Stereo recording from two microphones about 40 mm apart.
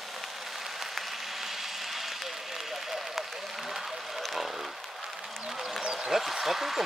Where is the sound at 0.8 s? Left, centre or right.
Centre.